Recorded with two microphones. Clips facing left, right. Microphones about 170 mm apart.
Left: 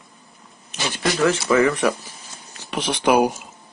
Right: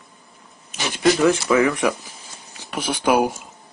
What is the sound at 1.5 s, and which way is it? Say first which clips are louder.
Speech: even; 10° right (ahead or behind).